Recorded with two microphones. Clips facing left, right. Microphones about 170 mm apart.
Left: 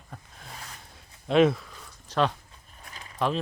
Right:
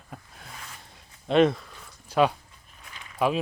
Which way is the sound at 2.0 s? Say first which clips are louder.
Right 3 dB; 10° right (ahead or behind).